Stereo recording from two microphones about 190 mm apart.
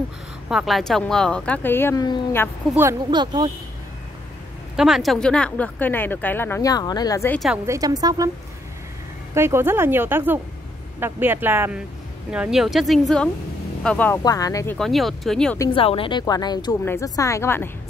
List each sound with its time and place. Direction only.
0.5 s speech: centre (ahead or behind); by 2.5 s 15° left (ahead or behind)
2.7 s a woman's voice: 10° right (ahead or behind)
3.1 s a woman's voice: 25° right (ahead or behind)
4.7 s speech: centre (ahead or behind); by 7.3 s 15° left (ahead or behind)
7.3 s speech: centre (ahead or behind)
7.6 s a woman's voice: 15° right (ahead or behind)
9.3 s a woman's voice: 15° right (ahead or behind); by 14.2 s 10° left (ahead or behind)
14.2 s speech: 20° left (ahead or behind)
14.8 s speech: centre (ahead or behind)
15.7 s a woman's voice: 30° left (ahead or behind); by 17.6 s 15° left (ahead or behind)